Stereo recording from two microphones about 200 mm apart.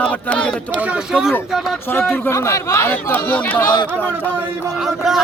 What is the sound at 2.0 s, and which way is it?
A man's voice, 10° left (ahead or behind).